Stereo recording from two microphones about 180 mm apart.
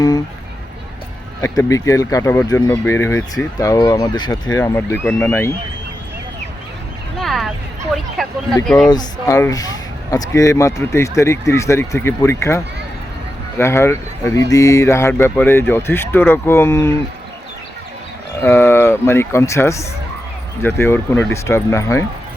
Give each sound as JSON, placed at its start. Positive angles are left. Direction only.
{"t": 1.4, "sound": "speech", "side_deg": 15}
{"t": 4.5, "sound": "speech", "side_deg": 15}
{"t": 7.2, "sound": "a sound", "side_deg": 0}
{"t": 8.2, "sound": "speech", "side_deg": 0}
{"t": 8.9, "sound": "speech", "side_deg": 20}
{"t": 18.4, "sound": "speech", "side_deg": 15}